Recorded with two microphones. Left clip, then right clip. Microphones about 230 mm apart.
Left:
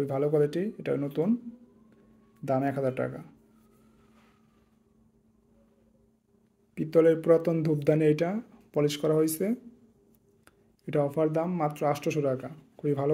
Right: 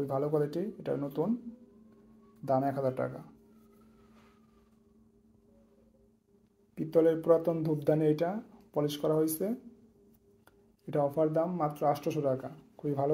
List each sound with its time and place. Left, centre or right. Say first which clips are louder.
0.0 s speech: left 5 dB; left
2.4 s speech: left 2 dB; left
6.7 s speech: left 4 dB; left
10.9 s speech: left 2 dB; left